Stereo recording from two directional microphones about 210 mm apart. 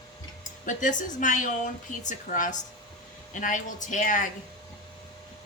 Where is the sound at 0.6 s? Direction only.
35° left (ahead or behind).